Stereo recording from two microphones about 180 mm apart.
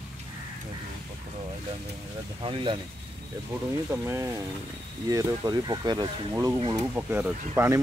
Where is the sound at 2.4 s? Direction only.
30° right (ahead or behind).